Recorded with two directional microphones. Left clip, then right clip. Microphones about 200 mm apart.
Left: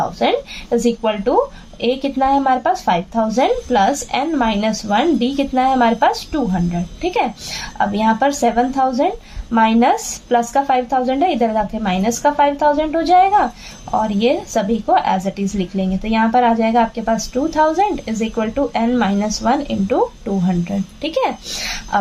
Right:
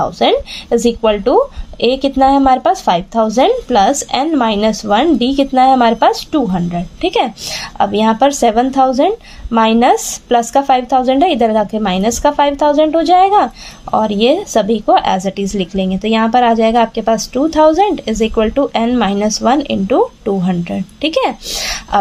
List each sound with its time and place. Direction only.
0.0 s a woman's voice: 45° right (ahead or behind)